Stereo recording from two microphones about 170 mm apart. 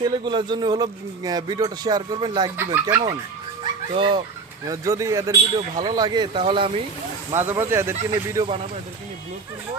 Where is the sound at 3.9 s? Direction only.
30° right (ahead or behind).